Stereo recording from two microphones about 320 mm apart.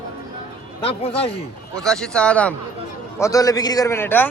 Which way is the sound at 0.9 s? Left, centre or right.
Centre.